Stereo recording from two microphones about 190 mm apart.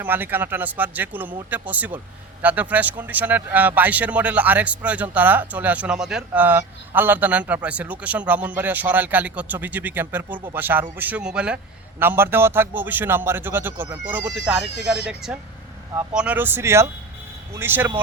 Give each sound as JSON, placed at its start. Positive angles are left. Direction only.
{"t": 0.0, "sound": "speech", "side_deg": -10}